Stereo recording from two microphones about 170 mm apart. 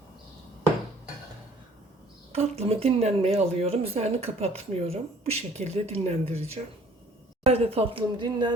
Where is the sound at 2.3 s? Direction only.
35° right (ahead or behind).